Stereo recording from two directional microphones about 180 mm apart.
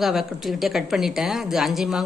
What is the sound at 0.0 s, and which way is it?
A woman's voice, centre (ahead or behind).